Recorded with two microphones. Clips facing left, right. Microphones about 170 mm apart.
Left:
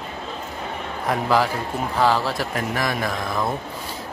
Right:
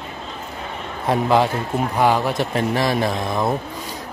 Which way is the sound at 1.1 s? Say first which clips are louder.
Right 3 dB; 25° right (ahead or behind).